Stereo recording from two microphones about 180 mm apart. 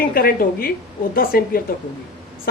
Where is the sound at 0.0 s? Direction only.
55° left (ahead or behind).